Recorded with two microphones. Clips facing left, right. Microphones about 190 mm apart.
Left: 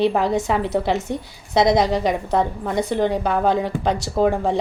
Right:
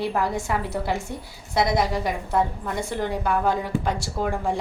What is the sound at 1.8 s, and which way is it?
Speech, 85° left.